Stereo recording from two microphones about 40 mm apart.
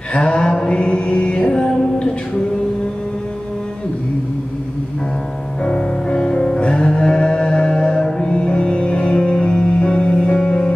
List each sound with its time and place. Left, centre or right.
0.1 s music: left
5.6 s music: left